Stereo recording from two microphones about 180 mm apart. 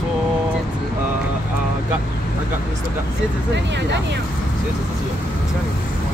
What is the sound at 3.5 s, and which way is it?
Speech, 75° right (ahead or behind).